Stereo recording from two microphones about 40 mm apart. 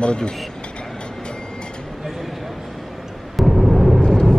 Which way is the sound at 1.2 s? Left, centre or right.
Centre.